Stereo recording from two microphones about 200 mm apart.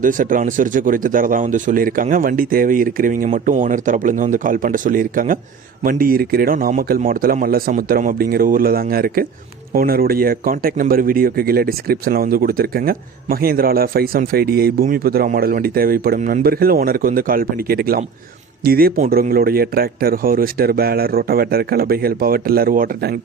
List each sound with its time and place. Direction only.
0.0 s a man's voice: 40° right (ahead or behind)